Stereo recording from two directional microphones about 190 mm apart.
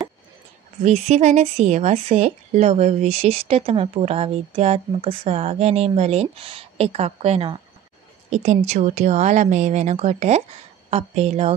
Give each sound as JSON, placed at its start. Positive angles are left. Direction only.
{"t": 0.8, "sound": "speech", "side_deg": -35}